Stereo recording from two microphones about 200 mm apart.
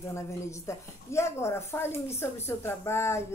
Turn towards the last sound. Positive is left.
turn(degrees=15)  # may be behind; listen again after turning